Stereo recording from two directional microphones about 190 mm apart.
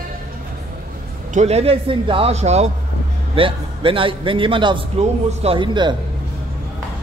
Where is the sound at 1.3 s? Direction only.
35° right (ahead or behind).